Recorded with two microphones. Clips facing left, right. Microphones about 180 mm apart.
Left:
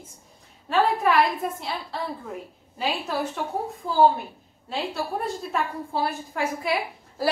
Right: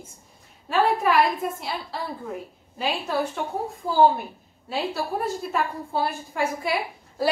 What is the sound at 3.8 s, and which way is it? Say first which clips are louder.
Speech: right 3 dB; 30° right (ahead or behind).